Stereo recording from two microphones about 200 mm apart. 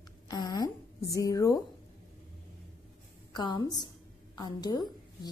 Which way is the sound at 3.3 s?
20° left (ahead or behind).